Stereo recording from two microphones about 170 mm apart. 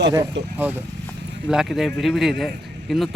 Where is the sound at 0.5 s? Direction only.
10° right (ahead or behind).